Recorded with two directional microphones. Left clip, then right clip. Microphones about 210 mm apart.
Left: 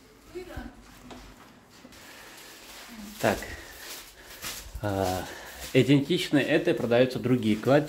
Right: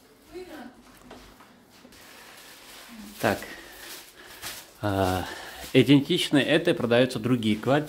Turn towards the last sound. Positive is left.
turn(degrees=-10)  # may be behind; listen again after turning